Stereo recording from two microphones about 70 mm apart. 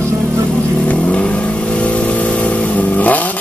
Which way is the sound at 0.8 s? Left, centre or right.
Centre.